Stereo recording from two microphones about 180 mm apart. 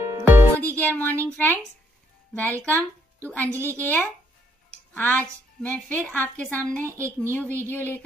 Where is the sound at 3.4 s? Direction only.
15° right (ahead or behind).